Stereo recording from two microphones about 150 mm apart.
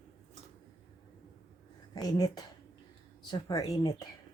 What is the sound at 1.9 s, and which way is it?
A woman's voice, 25° left (ahead or behind).